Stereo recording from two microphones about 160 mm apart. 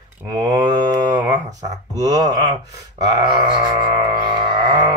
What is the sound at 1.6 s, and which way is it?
Speech, 25° right (ahead or behind).